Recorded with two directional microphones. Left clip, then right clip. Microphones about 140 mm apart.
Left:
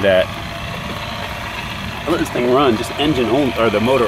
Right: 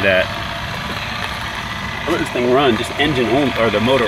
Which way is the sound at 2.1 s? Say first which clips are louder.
Even; 5° left (ahead or behind).